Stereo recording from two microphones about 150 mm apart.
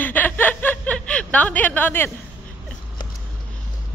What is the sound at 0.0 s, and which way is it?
Snicker, 10° left (ahead or behind).